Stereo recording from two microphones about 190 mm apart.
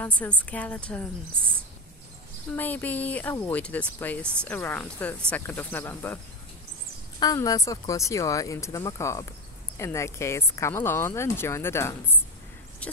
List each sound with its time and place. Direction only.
0.0 s speech: 10° left (ahead or behind)
2.5 s speech: 10° left (ahead or behind)
7.2 s speech: 20° left (ahead or behind)